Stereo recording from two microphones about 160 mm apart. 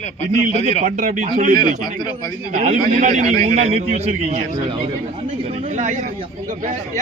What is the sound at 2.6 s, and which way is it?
A man's voice, 45° right (ahead or behind).